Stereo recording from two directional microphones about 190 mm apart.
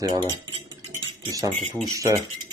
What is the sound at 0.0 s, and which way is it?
Speech, 25° right (ahead or behind).